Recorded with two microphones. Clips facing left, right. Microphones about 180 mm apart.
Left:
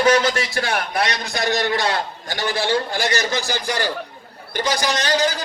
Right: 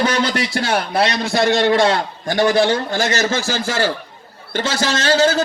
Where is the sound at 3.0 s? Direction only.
15° left (ahead or behind).